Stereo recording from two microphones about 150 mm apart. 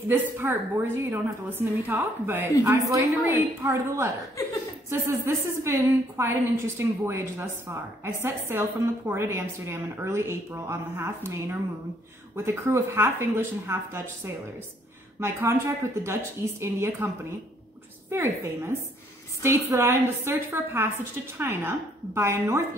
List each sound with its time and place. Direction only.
0.1 s a woman's voice: 15° right (ahead or behind)
18.1 s a woman's voice: 15° right (ahead or behind)